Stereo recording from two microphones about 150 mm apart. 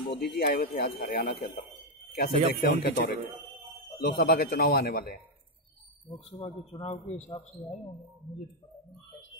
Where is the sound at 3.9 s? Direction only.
90° left.